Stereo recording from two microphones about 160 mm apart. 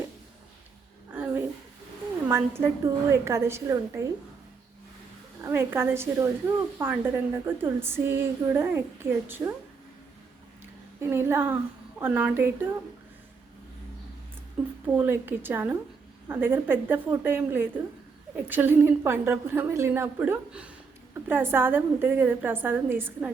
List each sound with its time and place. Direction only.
1.1 s a sound: 10° right (ahead or behind)
2.3 s a woman's voice: 15° right (ahead or behind)
5.4 s a woman's voice: 15° right (ahead or behind)
11.0 s a woman's voice: 15° right (ahead or behind)
14.6 s a woman's voice: 10° right (ahead or behind)